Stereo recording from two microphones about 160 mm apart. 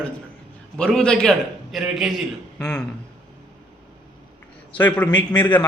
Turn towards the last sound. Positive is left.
turn(degrees=10)  # may be behind; listen again after turning